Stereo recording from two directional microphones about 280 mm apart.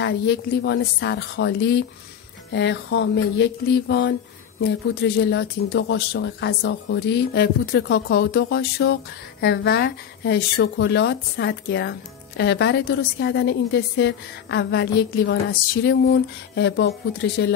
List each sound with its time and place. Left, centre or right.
0.0 s speech: left